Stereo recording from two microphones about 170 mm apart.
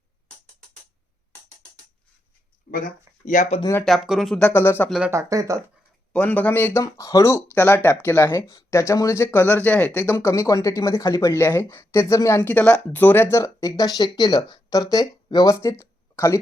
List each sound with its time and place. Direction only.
2.7 s a sound: 60° left (ahead or behind)
3.2 s speech: 45° left (ahead or behind)
3.8 s speech: centre (ahead or behind)
4.9 s speech: 5° right (ahead or behind)
5.1 s speech: 20° right (ahead or behind)
6.1 s speech: 10° left (ahead or behind)
15.8 s a sound: 20° left (ahead or behind)